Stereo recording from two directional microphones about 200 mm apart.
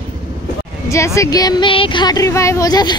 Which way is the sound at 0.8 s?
15° left (ahead or behind).